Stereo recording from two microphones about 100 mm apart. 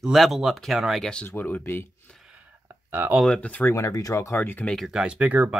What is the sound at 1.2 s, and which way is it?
Speech, 20° left (ahead or behind).